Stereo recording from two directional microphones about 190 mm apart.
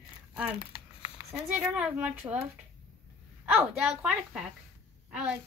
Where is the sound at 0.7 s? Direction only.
30° left (ahead or behind).